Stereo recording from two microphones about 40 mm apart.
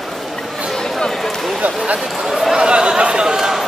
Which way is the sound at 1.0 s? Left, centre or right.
Centre.